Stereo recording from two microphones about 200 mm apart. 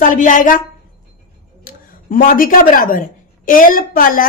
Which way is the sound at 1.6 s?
45° left (ahead or behind).